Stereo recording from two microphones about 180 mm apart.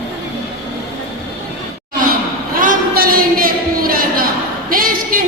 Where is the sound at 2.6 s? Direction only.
50° right (ahead or behind).